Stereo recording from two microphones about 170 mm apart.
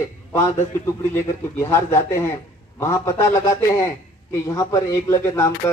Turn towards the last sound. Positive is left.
turn(degrees=15)  # may be behind; listen again after turning